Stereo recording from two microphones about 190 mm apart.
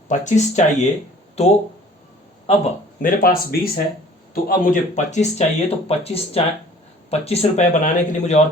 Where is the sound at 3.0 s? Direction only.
50° left (ahead or behind).